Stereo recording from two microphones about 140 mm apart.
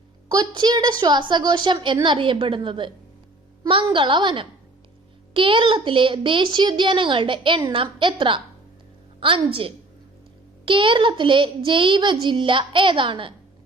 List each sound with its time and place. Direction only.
0.3 s a woman's voice: 30° right (ahead or behind)